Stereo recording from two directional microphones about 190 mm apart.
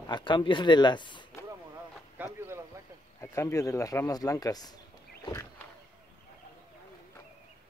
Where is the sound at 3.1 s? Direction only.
15° left (ahead or behind).